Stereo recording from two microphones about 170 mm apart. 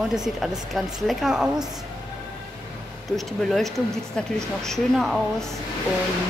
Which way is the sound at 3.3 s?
Centre (ahead or behind).